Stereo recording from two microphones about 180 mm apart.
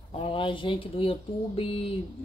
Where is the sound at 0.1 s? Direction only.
30° left (ahead or behind).